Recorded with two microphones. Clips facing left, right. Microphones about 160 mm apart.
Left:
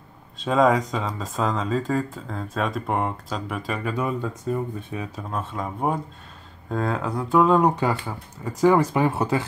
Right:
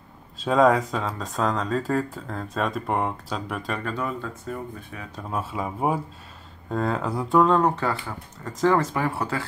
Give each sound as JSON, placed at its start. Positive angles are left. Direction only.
{"t": 0.4, "sound": "speech", "side_deg": 0}
{"t": 3.9, "sound": "speech", "side_deg": 15}
{"t": 5.3, "sound": "speech", "side_deg": -5}